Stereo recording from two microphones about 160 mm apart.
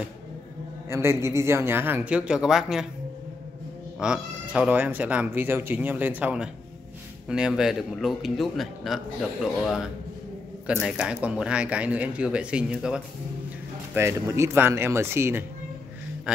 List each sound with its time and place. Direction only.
0.8 s speech: 15° right (ahead or behind)
4.0 s speech: 5° right (ahead or behind)
13.9 s speech: 15° right (ahead or behind)